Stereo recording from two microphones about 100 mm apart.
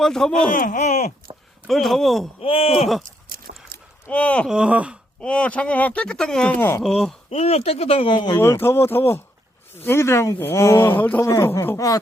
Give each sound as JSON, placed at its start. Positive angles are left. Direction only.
{"t": 0.0, "sound": "speech", "side_deg": 5}
{"t": 1.3, "sound": "a sound", "side_deg": -55}
{"t": 1.6, "sound": "speech", "side_deg": 0}
{"t": 2.4, "sound": "speech", "side_deg": 70}
{"t": 4.1, "sound": "speech", "side_deg": 15}
{"t": 4.4, "sound": "wail", "side_deg": -10}
{"t": 5.2, "sound": "speech", "side_deg": 10}
{"t": 6.6, "sound": "speech", "side_deg": 25}
{"t": 6.8, "sound": "speech", "side_deg": 5}
{"t": 7.3, "sound": "speech", "side_deg": 90}
{"t": 8.4, "sound": "speech", "side_deg": 25}
{"t": 11.3, "sound": "speech", "side_deg": 30}